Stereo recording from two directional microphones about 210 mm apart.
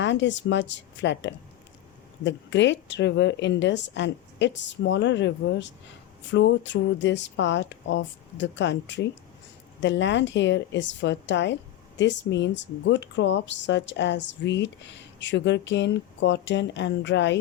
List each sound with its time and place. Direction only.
0.0 s speech: 60° left (ahead or behind)